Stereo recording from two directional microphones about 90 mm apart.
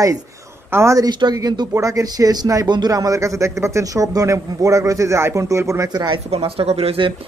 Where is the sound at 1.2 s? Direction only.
50° right (ahead or behind).